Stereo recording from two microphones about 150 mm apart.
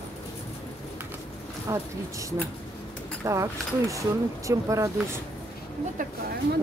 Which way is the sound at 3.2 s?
20° right (ahead or behind).